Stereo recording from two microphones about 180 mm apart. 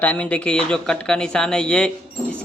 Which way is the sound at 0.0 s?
5° left (ahead or behind).